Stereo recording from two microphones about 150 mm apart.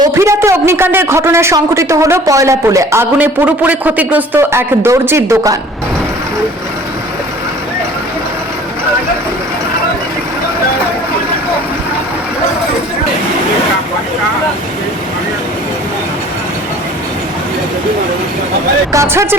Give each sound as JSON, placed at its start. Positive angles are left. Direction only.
{"t": 0.0, "sound": "a man's voice", "side_deg": -20}
{"t": 18.9, "sound": "a man's voice", "side_deg": -20}